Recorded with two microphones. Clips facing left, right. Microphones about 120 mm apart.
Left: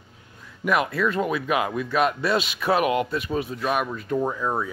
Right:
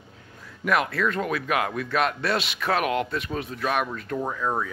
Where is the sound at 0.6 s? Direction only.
5° left (ahead or behind).